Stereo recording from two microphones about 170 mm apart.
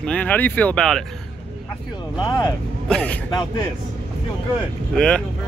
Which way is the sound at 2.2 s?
25° left (ahead or behind).